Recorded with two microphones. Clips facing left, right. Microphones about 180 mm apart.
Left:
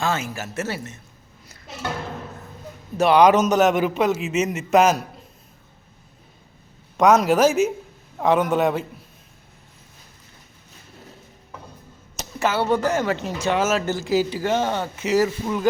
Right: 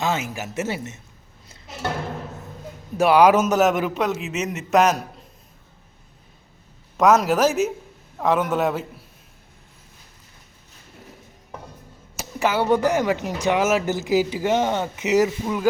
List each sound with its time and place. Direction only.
0.0 s speech: 20° right (ahead or behind)
3.0 s a man's voice: 5° right (ahead or behind)
6.9 s a man's voice: centre (ahead or behind)
12.1 s speech: 10° right (ahead or behind)